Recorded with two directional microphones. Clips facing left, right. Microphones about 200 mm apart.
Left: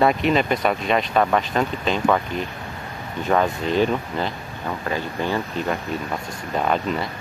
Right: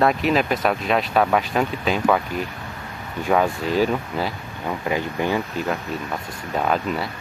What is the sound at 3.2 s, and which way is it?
Speech, 10° right (ahead or behind).